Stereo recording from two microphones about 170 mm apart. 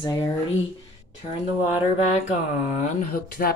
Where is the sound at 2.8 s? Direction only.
55° left (ahead or behind).